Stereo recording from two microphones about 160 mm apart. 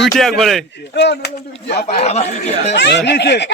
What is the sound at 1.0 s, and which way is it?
Speech, 90° left.